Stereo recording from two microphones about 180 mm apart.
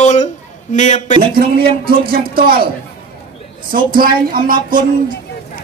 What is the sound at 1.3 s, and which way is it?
Speech, 55° right (ahead or behind).